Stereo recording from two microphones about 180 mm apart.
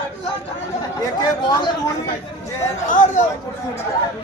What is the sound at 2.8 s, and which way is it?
Speech, 45° left (ahead or behind).